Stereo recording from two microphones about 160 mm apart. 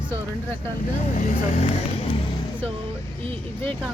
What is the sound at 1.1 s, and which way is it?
Speech, 50° left (ahead or behind).